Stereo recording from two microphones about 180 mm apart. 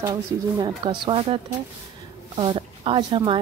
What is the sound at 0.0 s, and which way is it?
Speech, 20° right (ahead or behind).